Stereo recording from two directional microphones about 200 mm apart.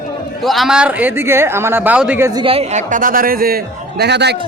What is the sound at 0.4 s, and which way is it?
A man's voice, centre (ahead or behind).